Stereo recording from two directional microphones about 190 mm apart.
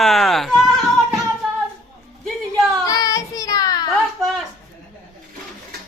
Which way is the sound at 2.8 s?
20° left (ahead or behind).